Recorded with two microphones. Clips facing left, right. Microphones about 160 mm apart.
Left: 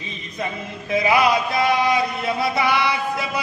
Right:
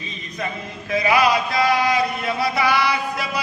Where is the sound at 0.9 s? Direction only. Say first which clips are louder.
Even; 25° left (ahead or behind).